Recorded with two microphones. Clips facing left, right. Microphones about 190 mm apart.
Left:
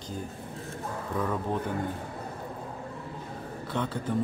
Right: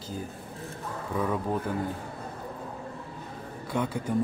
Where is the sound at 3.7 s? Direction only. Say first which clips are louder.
Right 2 dB; 10° right (ahead or behind).